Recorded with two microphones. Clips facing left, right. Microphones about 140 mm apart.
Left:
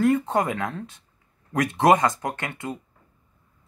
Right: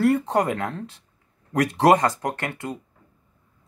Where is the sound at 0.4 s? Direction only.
40° right (ahead or behind).